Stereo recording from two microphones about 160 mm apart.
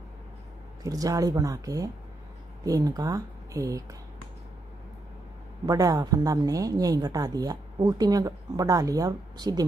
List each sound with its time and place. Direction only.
0.8 s speech: 20° right (ahead or behind)
5.7 s speech: 25° right (ahead or behind)